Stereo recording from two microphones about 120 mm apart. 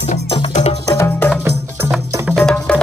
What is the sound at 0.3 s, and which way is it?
Music, 55° left (ahead or behind).